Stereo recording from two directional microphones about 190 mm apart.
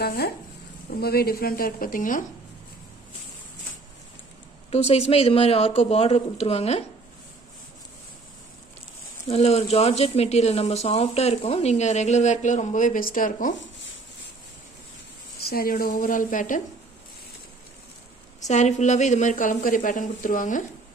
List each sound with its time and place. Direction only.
0.0 s speech: 55° left (ahead or behind)
4.6 s speech: 35° left (ahead or behind)
9.3 s speech: 35° left (ahead or behind)
15.4 s speech: 50° left (ahead or behind)
18.5 s speech: 40° left (ahead or behind)